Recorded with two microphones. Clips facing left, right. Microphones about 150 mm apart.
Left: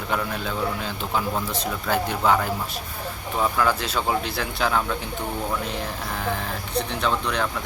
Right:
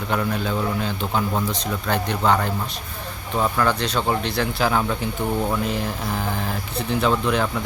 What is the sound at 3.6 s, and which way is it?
Speech, 5° left (ahead or behind).